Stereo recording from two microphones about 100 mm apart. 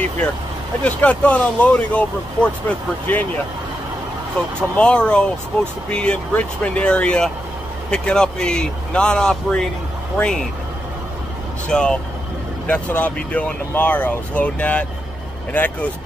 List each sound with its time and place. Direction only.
0.8 s speech: 15° left (ahead or behind)
4.4 s speech: 10° left (ahead or behind)
11.7 s speech: 10° left (ahead or behind)